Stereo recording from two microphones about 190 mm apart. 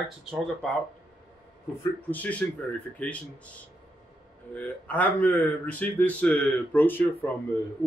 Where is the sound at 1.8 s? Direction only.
10° left (ahead or behind).